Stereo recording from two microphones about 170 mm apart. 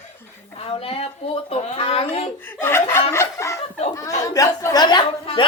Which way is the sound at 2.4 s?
15° left (ahead or behind).